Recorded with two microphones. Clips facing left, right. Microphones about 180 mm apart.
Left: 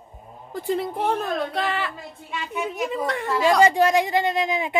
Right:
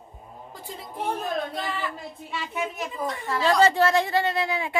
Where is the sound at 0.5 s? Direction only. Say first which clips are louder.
Left 11 dB; 70° left (ahead or behind).